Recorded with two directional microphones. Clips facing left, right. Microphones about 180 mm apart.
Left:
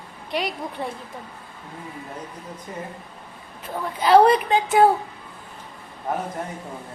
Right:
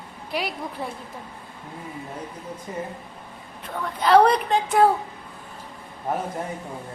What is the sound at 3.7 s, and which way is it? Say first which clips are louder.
A woman's voice: left 1 dB; 5° left (ahead or behind).